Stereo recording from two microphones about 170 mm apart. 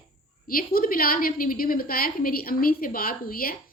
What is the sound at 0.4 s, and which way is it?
A woman's voice, 60° left (ahead or behind).